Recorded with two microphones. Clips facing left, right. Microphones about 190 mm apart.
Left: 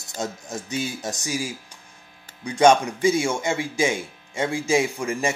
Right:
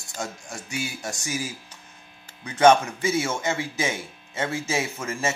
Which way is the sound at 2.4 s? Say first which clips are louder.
Left 1 dB; 15° left (ahead or behind).